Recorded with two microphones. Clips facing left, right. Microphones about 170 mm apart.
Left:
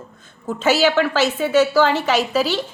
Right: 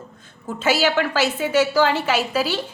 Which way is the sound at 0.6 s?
10° right (ahead or behind).